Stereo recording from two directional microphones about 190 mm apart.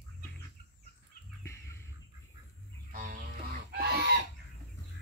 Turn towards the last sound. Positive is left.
turn(degrees=-60)  # may be behind; listen again after turning